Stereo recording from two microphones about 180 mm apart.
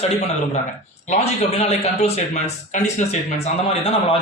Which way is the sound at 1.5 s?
35° left (ahead or behind).